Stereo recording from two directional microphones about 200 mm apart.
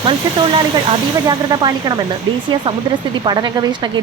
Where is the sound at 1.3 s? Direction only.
20° right (ahead or behind).